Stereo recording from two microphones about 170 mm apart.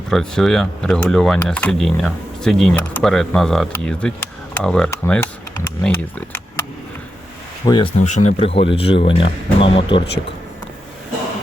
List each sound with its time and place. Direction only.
0.1 s speech: 5° left (ahead or behind)
7.6 s speech: 25° left (ahead or behind)
7.9 s a man's voice: 45° left (ahead or behind)